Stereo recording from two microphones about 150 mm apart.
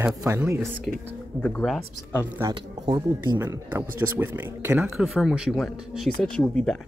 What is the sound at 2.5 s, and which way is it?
Speech, 25° right (ahead or behind).